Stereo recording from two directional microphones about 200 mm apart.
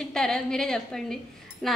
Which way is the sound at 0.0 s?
5° left (ahead or behind).